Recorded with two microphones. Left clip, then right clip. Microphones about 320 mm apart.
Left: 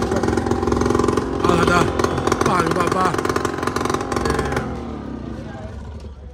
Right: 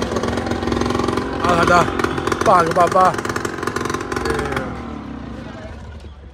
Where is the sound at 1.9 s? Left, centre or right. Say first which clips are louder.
Left 1 dB; left.